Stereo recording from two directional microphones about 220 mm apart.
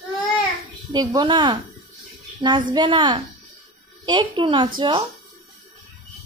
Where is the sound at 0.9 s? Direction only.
20° right (ahead or behind).